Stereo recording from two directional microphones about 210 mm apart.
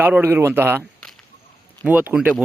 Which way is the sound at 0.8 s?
5° left (ahead or behind).